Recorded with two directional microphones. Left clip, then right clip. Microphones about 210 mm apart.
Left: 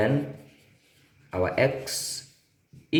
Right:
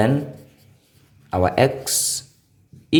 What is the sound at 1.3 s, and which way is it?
Speech, 55° right (ahead or behind).